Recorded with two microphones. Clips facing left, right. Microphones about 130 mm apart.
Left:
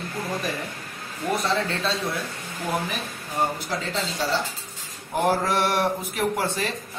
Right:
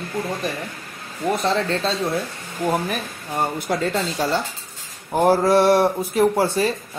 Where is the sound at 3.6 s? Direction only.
50° right (ahead or behind).